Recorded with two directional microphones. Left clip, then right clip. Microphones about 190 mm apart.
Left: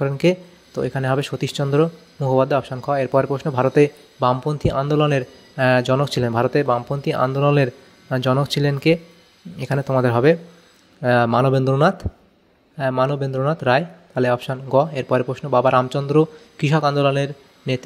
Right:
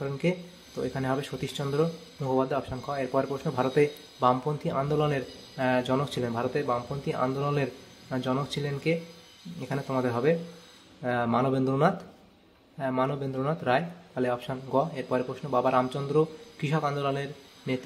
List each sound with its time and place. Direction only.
0.0 s speech: 40° left (ahead or behind)